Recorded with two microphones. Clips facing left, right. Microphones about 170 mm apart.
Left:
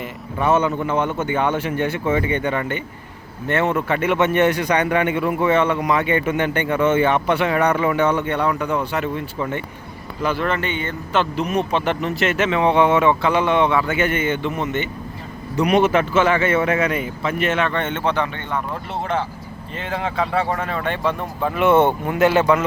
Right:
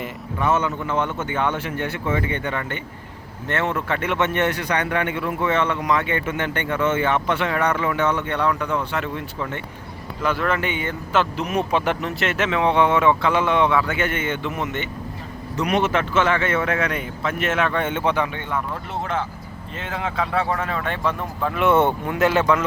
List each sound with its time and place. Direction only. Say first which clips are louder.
0.3 s a man's voice: left 4 dB; 20° left (ahead or behind); by 10.6 s centre (ahead or behind)
10.6 s speech: left 1 dB; 10° right (ahead or behind)
15.5 s speech: left 5 dB; 10° left (ahead or behind); by 18.6 s 10° right (ahead or behind)
19.8 s speech: left 3 dB; centre (ahead or behind)